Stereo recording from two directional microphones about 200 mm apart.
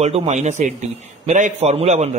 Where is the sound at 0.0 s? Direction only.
35° right (ahead or behind).